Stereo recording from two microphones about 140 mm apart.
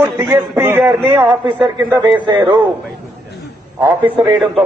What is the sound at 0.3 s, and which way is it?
A man's voice, 15° right (ahead or behind).